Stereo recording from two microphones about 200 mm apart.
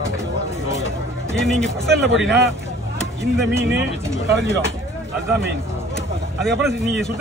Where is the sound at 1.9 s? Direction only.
60° right (ahead or behind).